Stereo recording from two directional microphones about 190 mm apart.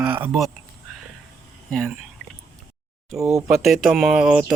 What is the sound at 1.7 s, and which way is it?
Speech, centre (ahead or behind).